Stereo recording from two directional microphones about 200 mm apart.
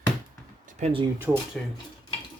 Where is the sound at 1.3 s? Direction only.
5° right (ahead or behind).